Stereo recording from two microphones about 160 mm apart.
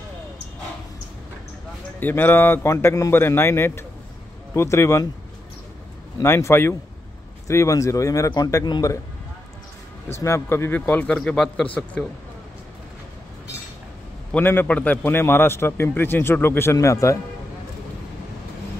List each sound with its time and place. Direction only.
2.0 s a man's voice: 10° left (ahead or behind)
6.2 s a man's voice: 15° left (ahead or behind)
10.2 s a man's voice: 15° left (ahead or behind)
14.3 s a man's voice: 10° left (ahead or behind)